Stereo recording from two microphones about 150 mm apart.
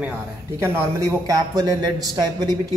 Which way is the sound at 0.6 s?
20° right (ahead or behind).